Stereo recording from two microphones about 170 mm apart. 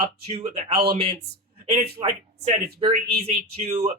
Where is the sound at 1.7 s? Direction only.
40° right (ahead or behind).